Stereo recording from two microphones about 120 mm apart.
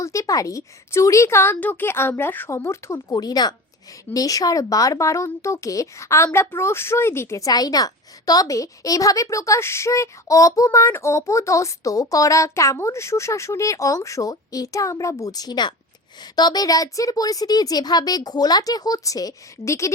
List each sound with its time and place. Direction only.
0.0 s a woman's voice: 25° left (ahead or behind)